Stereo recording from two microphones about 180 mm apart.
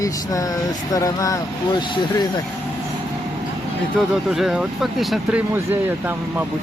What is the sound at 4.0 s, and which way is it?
Speech, centre (ahead or behind).